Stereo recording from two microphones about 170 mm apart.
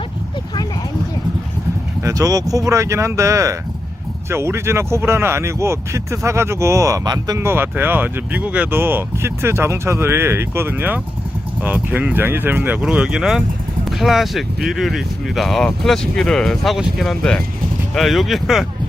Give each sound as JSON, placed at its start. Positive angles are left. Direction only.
{"t": 2.0, "sound": "speech", "side_deg": -20}